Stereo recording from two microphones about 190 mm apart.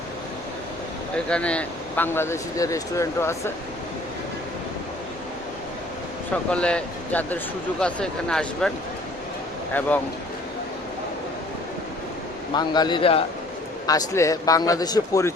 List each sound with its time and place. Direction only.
1.1 s speech: 5° left (ahead or behind)
6.5 s speech: 5° left (ahead or behind)
12.5 s a man's voice: 20° left (ahead or behind)
13.8 s a man's voice: 15° left (ahead or behind)